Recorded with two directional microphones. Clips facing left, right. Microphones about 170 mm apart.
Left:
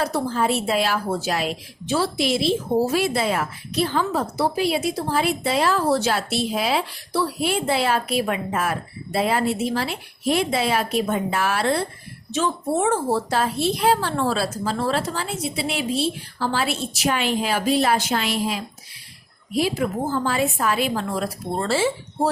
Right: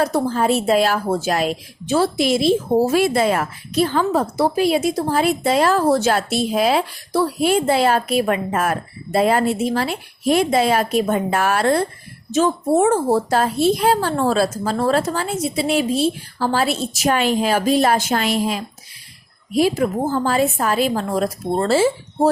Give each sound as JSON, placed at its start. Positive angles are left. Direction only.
{"t": 0.0, "sound": "a woman's voice", "side_deg": -45}